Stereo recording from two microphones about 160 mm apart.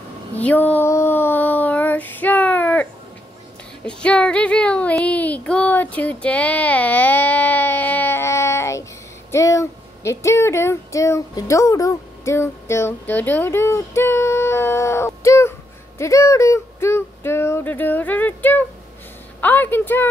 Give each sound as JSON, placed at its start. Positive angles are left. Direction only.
{"t": 0.4, "sound": "female singing", "side_deg": 10}
{"t": 3.8, "sound": "child singing", "side_deg": 5}
{"t": 9.3, "sound": "a sound", "side_deg": 20}
{"t": 16.0, "sound": "speech", "side_deg": 20}